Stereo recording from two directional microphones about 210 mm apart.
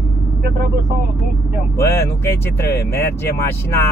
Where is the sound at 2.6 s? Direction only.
15° left (ahead or behind).